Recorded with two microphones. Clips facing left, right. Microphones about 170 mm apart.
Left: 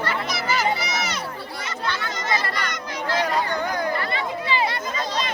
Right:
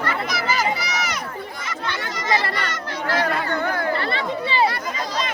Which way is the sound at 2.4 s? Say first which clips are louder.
Right 2 dB; 15° left (ahead or behind).